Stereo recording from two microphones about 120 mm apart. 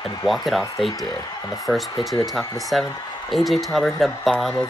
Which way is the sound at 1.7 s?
5° left (ahead or behind).